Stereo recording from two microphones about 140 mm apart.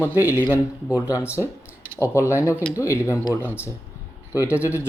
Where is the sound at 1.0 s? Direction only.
25° left (ahead or behind).